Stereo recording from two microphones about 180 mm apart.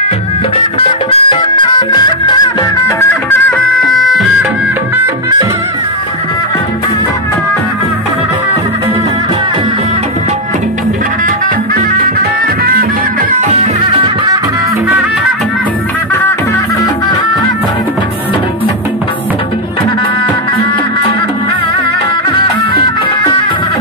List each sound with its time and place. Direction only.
0.7 s music: 30° left (ahead or behind)
3.0 s music: 15° left (ahead or behind)
12.0 s music: 55° right (ahead or behind)
13.5 s music: 35° right (ahead or behind)